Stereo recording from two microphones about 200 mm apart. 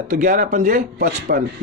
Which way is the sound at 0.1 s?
45° right (ahead or behind).